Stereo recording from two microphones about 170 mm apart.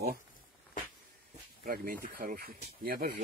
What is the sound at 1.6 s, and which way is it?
Speech, 60° right (ahead or behind).